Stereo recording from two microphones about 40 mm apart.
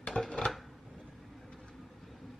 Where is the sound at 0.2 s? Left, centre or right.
Left.